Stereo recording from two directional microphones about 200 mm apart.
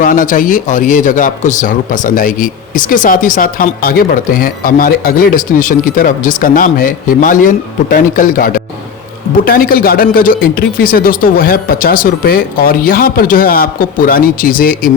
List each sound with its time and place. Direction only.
0.0 s a man's voice: 40° left (ahead or behind)